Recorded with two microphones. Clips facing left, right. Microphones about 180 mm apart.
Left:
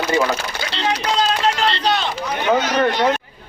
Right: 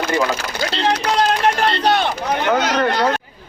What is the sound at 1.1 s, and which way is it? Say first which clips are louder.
Run: right 1 dB; 60° right (ahead or behind).